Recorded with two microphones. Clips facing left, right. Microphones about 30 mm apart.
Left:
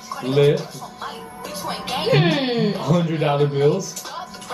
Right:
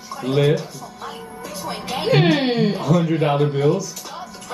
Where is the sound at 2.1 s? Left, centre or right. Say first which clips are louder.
Right 2 dB; centre.